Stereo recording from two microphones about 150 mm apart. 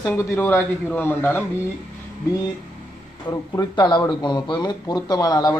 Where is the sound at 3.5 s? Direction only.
30° left (ahead or behind).